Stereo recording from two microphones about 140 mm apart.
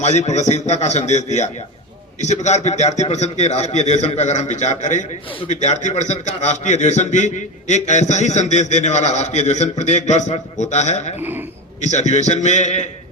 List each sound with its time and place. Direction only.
0.0 s a man's voice: 55° left (ahead or behind)
11.2 s speech: 15° right (ahead or behind)
11.8 s a man's voice: 55° left (ahead or behind)